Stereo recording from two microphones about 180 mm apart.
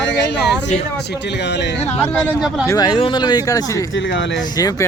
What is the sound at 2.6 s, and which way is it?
Speech, 20° left (ahead or behind).